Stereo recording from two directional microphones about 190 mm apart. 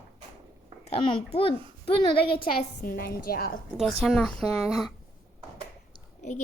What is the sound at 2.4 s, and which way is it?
A woman's voice, 50° left (ahead or behind).